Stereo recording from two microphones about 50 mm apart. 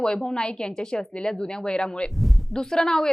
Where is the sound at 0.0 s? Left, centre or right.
Centre.